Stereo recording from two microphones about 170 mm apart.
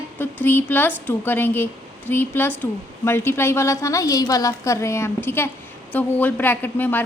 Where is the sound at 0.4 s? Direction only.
10° left (ahead or behind).